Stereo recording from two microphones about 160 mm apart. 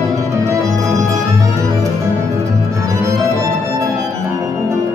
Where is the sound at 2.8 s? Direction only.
20° right (ahead or behind).